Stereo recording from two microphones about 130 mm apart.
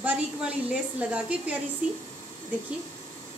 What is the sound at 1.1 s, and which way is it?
Speech, 10° right (ahead or behind).